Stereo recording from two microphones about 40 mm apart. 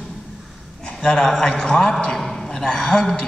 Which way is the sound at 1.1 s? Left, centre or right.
Centre.